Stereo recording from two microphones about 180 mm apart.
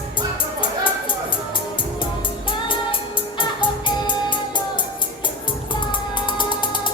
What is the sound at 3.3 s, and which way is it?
Music, 25° left (ahead or behind).